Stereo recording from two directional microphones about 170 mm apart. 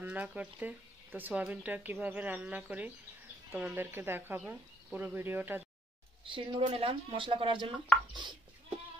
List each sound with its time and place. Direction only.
0.0 s speech: 10° right (ahead or behind)
6.2 s speech: 30° right (ahead or behind)